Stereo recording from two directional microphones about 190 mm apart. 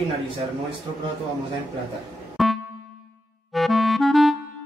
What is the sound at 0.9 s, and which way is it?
Speech, 25° right (ahead or behind).